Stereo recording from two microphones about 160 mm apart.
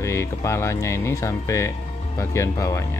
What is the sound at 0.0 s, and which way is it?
Speech, 20° left (ahead or behind).